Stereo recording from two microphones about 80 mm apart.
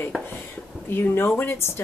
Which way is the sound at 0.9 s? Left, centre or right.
Left.